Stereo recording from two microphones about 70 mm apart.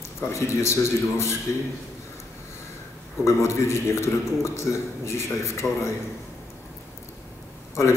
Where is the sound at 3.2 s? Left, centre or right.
Left.